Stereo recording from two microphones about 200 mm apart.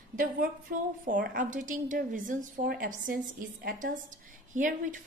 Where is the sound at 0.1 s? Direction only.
45° right (ahead or behind).